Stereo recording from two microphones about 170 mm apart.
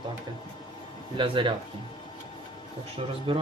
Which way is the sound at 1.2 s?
30° right (ahead or behind).